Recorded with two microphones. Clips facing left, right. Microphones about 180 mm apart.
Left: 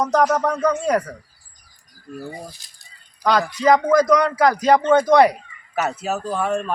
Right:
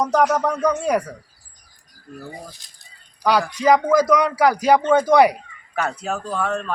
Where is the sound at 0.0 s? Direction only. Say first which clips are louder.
Even; 10° right (ahead or behind).